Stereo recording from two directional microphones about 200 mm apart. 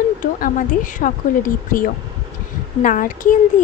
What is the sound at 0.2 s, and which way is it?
Speech, 40° left (ahead or behind).